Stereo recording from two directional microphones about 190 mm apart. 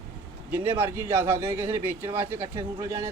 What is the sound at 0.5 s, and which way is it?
Speech, 10° right (ahead or behind).